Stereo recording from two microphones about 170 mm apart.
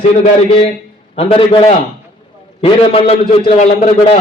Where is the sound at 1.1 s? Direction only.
30° left (ahead or behind).